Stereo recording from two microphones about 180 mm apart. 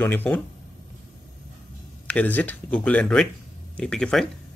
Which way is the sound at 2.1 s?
10° left (ahead or behind).